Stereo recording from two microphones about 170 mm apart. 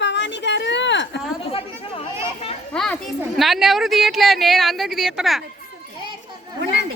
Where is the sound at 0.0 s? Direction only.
90° left.